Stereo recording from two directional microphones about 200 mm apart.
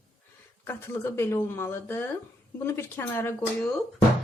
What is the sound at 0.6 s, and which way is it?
Speech, 10° left (ahead or behind).